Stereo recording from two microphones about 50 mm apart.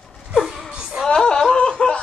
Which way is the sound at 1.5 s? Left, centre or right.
Left.